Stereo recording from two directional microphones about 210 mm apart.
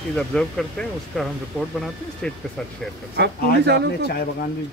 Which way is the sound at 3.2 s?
55° right (ahead or behind).